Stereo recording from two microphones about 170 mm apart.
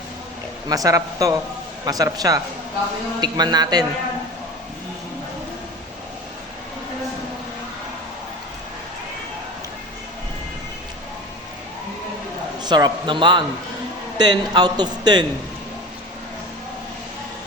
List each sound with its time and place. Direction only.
0.7 s a man's voice: 20° right (ahead or behind)
12.6 s a man's voice: 25° right (ahead or behind)